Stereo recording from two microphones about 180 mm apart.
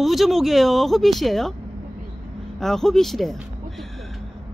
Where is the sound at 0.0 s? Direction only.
Centre (ahead or behind).